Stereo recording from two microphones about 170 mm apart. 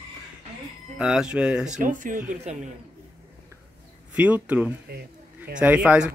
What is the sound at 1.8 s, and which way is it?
Speech, 50° right (ahead or behind).